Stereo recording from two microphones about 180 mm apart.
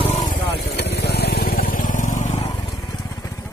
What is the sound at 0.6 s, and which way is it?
Vehicle, 60° left (ahead or behind).